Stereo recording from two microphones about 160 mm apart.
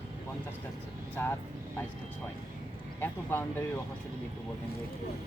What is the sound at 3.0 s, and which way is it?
Speech, 15° left (ahead or behind).